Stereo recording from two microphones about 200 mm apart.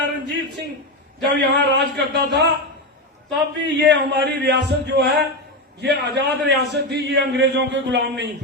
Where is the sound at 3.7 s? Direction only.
60° right (ahead or behind).